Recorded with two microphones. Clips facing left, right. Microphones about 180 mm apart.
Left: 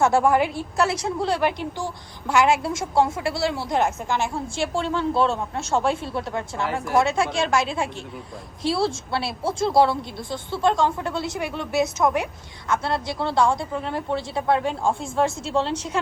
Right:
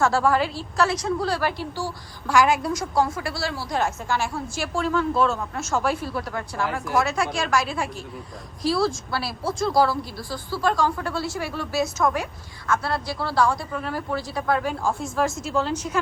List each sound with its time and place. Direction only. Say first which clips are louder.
0.0 s a woman's voice: left 2 dB; 20° left (ahead or behind)